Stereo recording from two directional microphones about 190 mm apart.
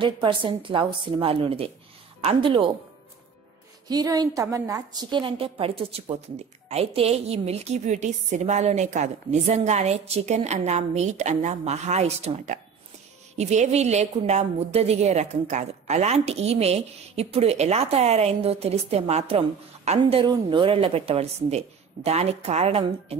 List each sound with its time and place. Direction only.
0.0 s a woman's voice: 25° right (ahead or behind)
3.9 s a woman's voice: 20° right (ahead or behind)